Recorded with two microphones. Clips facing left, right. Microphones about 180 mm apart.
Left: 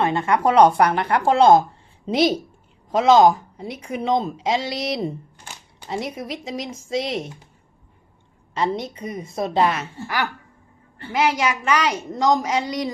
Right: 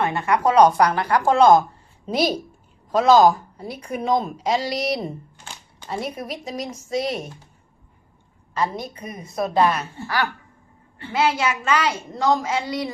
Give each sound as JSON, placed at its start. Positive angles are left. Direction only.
{"t": 0.0, "sound": "speech", "side_deg": 25}
{"t": 2.9, "sound": "speech", "side_deg": 25}
{"t": 8.5, "sound": "a woman's voice", "side_deg": 25}